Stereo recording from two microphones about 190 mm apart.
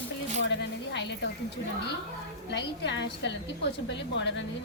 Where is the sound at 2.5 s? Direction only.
70° left (ahead or behind).